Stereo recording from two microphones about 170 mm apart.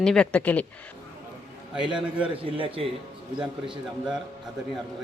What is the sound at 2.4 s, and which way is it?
A man's voice, 30° right (ahead or behind).